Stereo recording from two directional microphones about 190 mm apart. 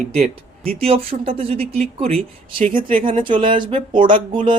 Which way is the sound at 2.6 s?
45° right (ahead or behind).